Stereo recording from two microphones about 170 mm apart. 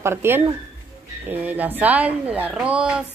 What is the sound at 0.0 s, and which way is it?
Speech, 15° right (ahead or behind).